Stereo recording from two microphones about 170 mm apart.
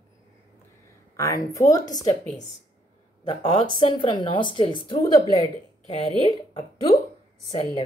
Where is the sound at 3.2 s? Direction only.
30° left (ahead or behind).